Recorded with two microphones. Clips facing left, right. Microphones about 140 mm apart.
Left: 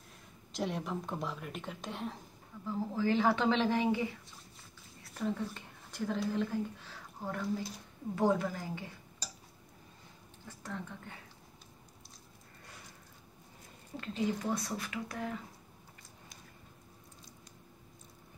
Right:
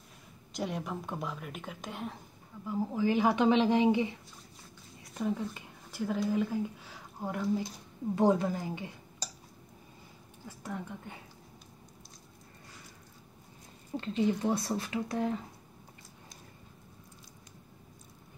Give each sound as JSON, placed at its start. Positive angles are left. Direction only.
{"t": 0.5, "sound": "a woman's voice", "side_deg": 0}
{"t": 2.6, "sound": "speech", "side_deg": -15}
{"t": 10.6, "sound": "speech", "side_deg": -15}
{"t": 13.9, "sound": "speech", "side_deg": -30}